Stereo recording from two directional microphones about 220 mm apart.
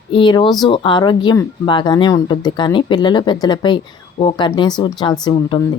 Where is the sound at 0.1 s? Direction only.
20° left (ahead or behind).